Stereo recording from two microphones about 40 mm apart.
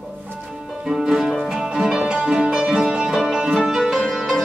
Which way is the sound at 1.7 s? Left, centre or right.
Right.